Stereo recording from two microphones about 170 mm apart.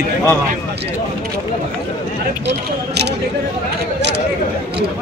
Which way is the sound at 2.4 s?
75° right (ahead or behind).